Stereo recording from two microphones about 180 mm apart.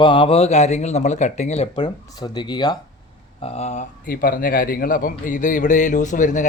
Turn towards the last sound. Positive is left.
turn(degrees=45)  # may be behind; listen again after turning